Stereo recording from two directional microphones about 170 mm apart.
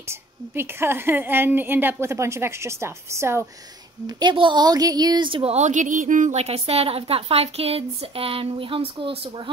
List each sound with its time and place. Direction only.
0.1 s a woman's voice: 15° right (ahead or behind)
4.2 s speech: 30° right (ahead or behind)